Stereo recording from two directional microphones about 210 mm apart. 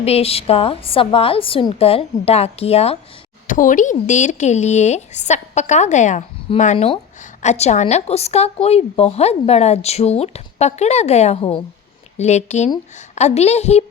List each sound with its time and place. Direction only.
0.0 s a woman's voice: 30° left (ahead or behind)